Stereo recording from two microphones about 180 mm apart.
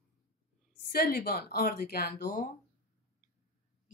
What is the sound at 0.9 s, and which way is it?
Speech, 60° left (ahead or behind).